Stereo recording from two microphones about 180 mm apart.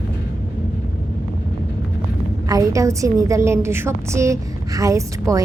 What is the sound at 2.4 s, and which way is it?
A woman's voice, 20° right (ahead or behind).